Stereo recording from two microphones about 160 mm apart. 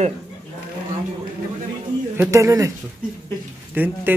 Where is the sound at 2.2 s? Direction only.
20° right (ahead or behind).